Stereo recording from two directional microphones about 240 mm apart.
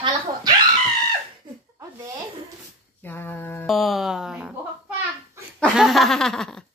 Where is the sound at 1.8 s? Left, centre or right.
Centre.